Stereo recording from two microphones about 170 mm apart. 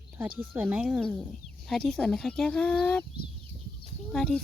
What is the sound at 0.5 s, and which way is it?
Speech, 5° right (ahead or behind).